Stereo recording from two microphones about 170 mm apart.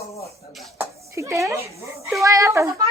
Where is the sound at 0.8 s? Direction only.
20° right (ahead or behind).